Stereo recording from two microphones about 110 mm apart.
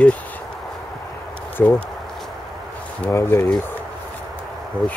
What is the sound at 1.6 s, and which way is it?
Speech, 15° left (ahead or behind).